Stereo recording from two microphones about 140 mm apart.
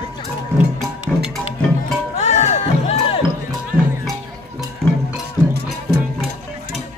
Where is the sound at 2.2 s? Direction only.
55° left (ahead or behind).